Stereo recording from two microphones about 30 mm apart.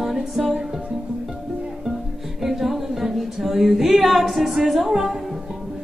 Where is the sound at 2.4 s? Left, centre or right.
Centre.